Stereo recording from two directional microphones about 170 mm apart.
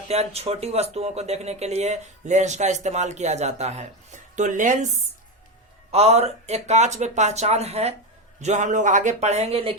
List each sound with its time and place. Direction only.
0.1 s speech: 35° right (ahead or behind)
5.9 s speech: 40° right (ahead or behind)